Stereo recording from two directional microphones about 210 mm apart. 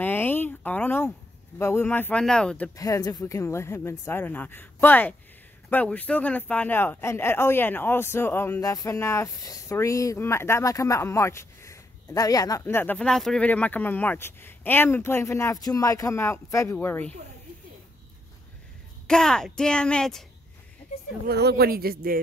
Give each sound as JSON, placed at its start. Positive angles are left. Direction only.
{"t": 0.0, "sound": "a sound", "side_deg": 10}
{"t": 1.6, "sound": "speech", "side_deg": 10}
{"t": 19.0, "sound": "speech", "side_deg": 5}
{"t": 21.3, "sound": "speech", "side_deg": -50}